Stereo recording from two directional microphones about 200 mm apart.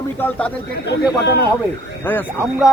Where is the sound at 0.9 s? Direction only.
55° left (ahead or behind).